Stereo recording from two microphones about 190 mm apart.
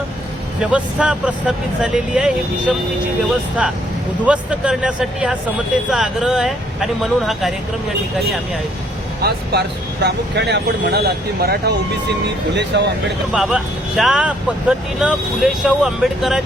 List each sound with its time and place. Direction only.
0.6 s speech: 5° right (ahead or behind)
4.3 s speech: 5° right (ahead or behind)
9.2 s speech: 60° right (ahead or behind)
13.3 s speech: centre (ahead or behind)